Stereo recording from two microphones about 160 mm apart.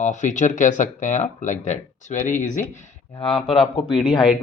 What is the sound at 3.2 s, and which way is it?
Speech, 35° left (ahead or behind).